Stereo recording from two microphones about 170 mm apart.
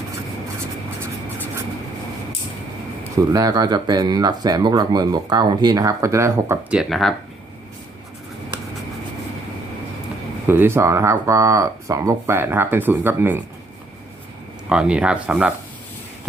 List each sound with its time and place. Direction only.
3.2 s speech: 20° right (ahead or behind); by 7.1 s 5° right (ahead or behind)
10.4 s speech: 10° right (ahead or behind)
14.7 s speech: 5° right (ahead or behind)